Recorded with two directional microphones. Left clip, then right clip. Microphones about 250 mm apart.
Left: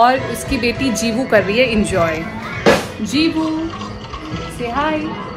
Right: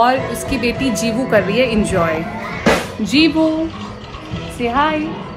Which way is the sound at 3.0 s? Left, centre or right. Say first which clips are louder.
Right 4 dB; right.